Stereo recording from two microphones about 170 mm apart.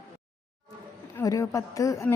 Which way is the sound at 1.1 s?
20° left (ahead or behind).